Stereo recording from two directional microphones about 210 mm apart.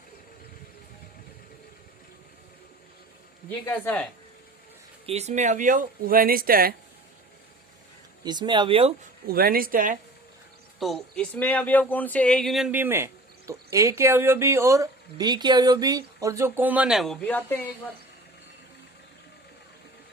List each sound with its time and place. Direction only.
3.7 s speech: 5° left (ahead or behind)
5.0 s speech: 30° right (ahead or behind)
8.2 s speech: 20° right (ahead or behind)
9.2 s speech: 45° right (ahead or behind)
10.8 s speech: centre (ahead or behind)